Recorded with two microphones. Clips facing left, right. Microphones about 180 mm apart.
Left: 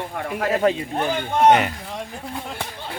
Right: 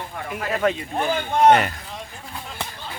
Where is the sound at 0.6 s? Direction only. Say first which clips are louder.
Left 1 dB; 35° left (ahead or behind).